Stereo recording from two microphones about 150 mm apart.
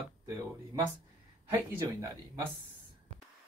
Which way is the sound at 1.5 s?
20° right (ahead or behind).